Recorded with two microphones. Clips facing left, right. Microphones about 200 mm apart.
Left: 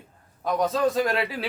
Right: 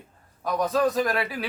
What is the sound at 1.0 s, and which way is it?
Speech, 25° left (ahead or behind).